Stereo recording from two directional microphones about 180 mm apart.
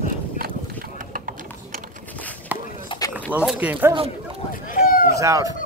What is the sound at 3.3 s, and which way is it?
Speech, 5° right (ahead or behind).